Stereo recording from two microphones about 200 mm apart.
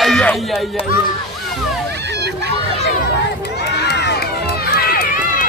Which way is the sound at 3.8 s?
55° left (ahead or behind).